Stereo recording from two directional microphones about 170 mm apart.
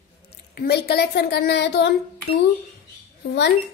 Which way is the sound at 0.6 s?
70° left (ahead or behind).